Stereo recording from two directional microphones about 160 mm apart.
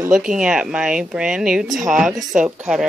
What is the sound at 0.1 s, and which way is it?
Speech, 5° right (ahead or behind).